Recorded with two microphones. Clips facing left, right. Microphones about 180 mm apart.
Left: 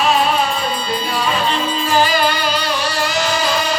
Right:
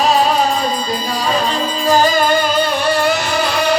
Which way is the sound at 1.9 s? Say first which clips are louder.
Right 4 dB; 40° right (ahead or behind).